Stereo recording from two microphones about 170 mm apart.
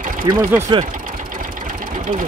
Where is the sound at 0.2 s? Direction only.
25° right (ahead or behind).